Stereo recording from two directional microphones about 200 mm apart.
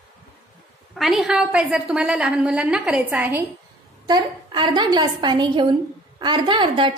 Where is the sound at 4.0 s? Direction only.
20° right (ahead or behind).